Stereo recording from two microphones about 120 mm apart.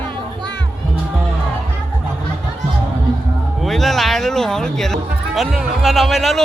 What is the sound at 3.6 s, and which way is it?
Speech, centre (ahead or behind).